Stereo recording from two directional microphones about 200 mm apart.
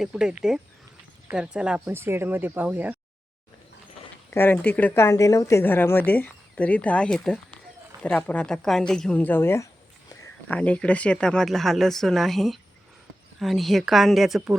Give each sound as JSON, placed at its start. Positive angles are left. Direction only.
{"t": 0.0, "sound": "speech", "side_deg": -5}
{"t": 4.3, "sound": "speech", "side_deg": 10}
{"t": 10.1, "sound": "a sound", "side_deg": 15}
{"t": 10.6, "sound": "speech", "side_deg": 5}